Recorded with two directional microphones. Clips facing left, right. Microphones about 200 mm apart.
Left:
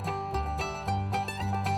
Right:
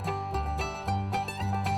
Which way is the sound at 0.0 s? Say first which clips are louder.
Even; centre (ahead or behind).